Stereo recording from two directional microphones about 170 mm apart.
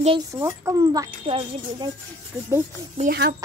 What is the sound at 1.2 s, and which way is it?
Speech, 30° right (ahead or behind).